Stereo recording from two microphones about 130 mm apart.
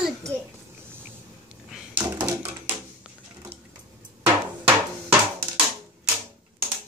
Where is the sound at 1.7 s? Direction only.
10° right (ahead or behind).